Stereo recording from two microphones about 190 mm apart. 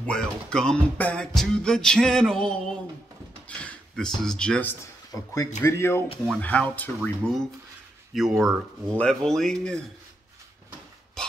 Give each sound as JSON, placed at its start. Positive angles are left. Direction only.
{"t": 0.0, "sound": "music", "side_deg": 5}
{"t": 3.4, "sound": "speech", "side_deg": 5}
{"t": 5.1, "sound": "speech", "side_deg": 15}
{"t": 7.0, "sound": "music", "side_deg": 0}
{"t": 11.2, "sound": "a sound", "side_deg": 5}